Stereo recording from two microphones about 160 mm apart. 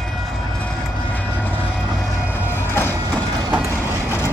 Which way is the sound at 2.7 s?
15° left (ahead or behind).